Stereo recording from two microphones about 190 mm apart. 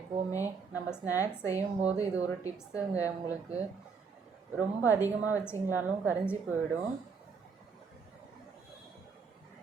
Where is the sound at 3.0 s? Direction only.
10° right (ahead or behind).